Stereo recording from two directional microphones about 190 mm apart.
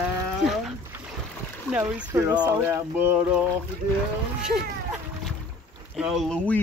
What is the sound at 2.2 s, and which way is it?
Speech, 20° right (ahead or behind).